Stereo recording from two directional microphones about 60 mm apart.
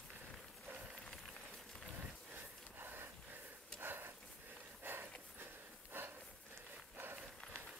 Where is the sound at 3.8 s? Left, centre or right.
Right.